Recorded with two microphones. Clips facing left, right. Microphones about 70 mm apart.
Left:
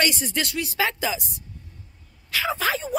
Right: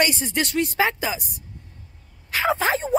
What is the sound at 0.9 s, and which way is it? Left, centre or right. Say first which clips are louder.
Speech: right 1 dB; right.